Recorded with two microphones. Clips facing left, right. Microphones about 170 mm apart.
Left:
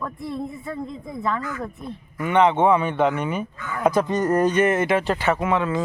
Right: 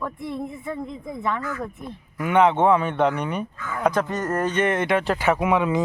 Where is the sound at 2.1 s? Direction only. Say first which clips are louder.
Even; 5° right (ahead or behind).